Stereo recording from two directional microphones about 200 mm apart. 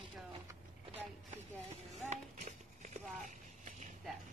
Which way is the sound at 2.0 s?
35° right (ahead or behind).